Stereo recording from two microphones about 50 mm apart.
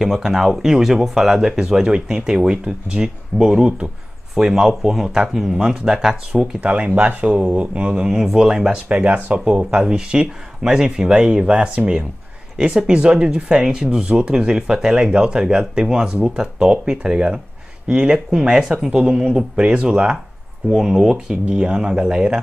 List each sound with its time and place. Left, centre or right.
0.0 s speech: centre
6.4 s speech: right
8.1 s speech: centre
8.8 s speech: right